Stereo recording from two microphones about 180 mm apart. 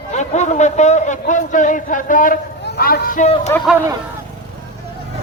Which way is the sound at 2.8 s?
50° left (ahead or behind).